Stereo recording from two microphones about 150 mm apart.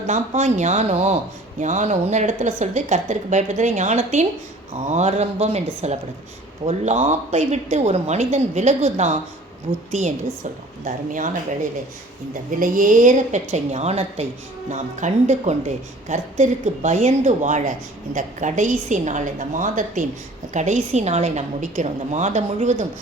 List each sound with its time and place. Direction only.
0.1 s a woman's voice: 50° right (ahead or behind)
9.7 s a woman's voice: 40° right (ahead or behind)
10.8 s a woman's voice: 60° right (ahead or behind)
12.3 s a woman's voice: 65° right (ahead or behind)